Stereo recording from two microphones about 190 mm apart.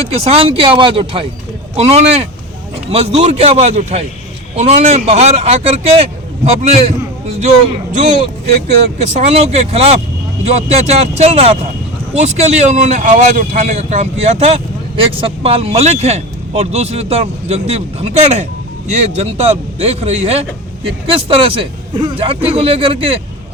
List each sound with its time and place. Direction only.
0.0 s a man's voice: 30° right (ahead or behind)
9.0 s a man's voice: 35° right (ahead or behind)